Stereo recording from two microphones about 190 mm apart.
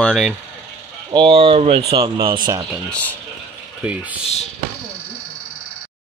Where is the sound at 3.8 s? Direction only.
5° right (ahead or behind).